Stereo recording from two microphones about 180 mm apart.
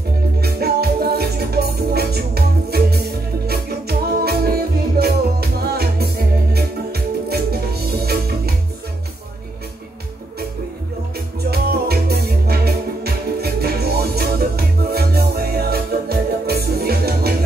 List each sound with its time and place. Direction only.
0.4 s music: 60° right (ahead or behind)
11.5 s music: 60° right (ahead or behind)